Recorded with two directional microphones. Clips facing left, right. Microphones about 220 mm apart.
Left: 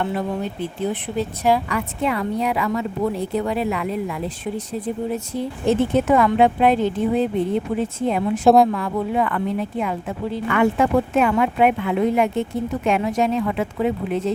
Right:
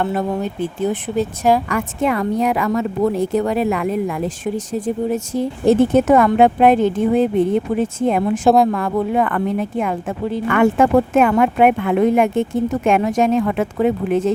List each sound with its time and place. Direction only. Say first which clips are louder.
0.0 s speech: right 4 dB; 45° right (ahead or behind)